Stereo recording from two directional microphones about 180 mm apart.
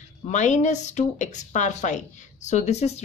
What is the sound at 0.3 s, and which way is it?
A woman's voice, 40° left (ahead or behind).